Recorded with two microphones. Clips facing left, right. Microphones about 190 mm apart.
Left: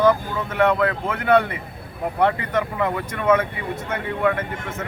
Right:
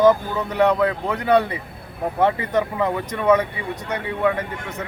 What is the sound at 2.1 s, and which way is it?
Speech, 20° right (ahead or behind).